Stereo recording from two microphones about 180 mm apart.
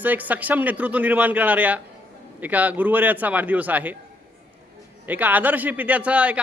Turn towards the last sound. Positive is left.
turn(degrees=-5)  # may be behind; listen again after turning